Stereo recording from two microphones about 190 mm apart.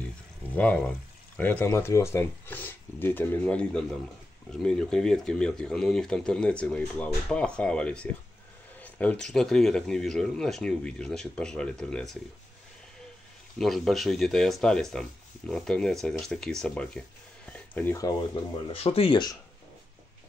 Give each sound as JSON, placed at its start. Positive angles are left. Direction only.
{"t": 0.5, "sound": "speech", "side_deg": 10}
{"t": 13.6, "sound": "speech", "side_deg": 0}
{"t": 17.5, "sound": "a sound", "side_deg": 10}
{"t": 18.7, "sound": "speech", "side_deg": 30}